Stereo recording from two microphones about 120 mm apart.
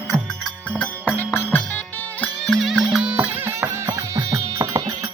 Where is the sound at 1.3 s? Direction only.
20° left (ahead or behind).